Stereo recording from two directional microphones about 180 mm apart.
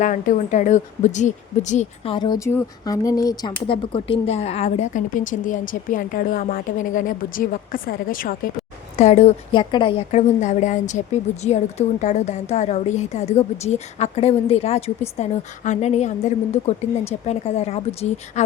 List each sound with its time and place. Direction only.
0.0 s speech: 45° left (ahead or behind)
2.1 s speech: 25° left (ahead or behind); by 8.4 s 50° left (ahead or behind)
9.0 s a woman's voice: 40° left (ahead or behind)